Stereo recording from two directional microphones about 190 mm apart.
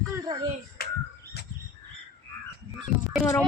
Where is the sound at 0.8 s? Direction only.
55° left (ahead or behind).